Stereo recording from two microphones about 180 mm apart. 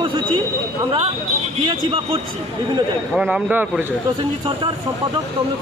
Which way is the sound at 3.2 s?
5° right (ahead or behind).